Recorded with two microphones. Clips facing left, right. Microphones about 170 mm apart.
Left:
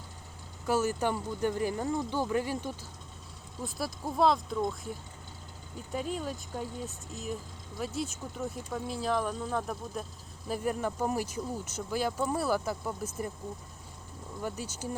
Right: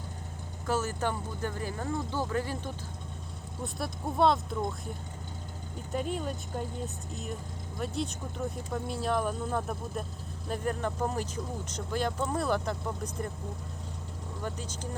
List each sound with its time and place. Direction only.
0.7 s speech: 10° left (ahead or behind)
3.6 s speech: centre (ahead or behind)
5.9 s speech: centre (ahead or behind)
14.4 s speech: 10° left (ahead or behind)